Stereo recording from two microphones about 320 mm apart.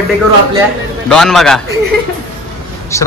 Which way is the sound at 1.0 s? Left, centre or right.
Centre.